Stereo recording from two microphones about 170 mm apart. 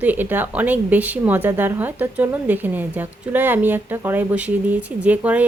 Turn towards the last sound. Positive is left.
turn(degrees=-10)  # may be behind; listen again after turning